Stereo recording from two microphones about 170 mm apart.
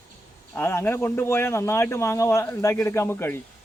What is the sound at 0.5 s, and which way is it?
Speech, 15° left (ahead or behind).